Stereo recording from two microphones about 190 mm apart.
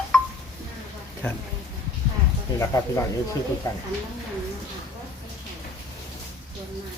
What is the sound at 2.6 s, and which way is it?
Speech, 15° left (ahead or behind).